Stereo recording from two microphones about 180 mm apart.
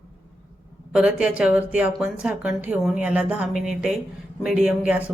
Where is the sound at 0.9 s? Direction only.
5° right (ahead or behind).